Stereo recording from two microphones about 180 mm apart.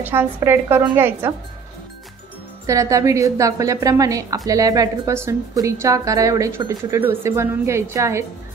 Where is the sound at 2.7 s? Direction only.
15° right (ahead or behind).